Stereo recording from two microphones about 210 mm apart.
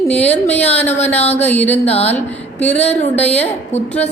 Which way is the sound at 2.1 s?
10° left (ahead or behind).